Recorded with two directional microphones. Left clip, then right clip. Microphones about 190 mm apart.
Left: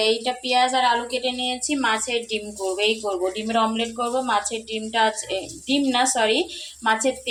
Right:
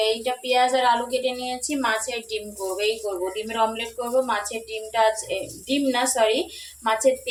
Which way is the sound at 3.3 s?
5° left (ahead or behind).